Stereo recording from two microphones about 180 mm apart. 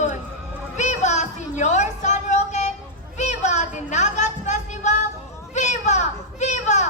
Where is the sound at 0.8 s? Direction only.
40° left (ahead or behind).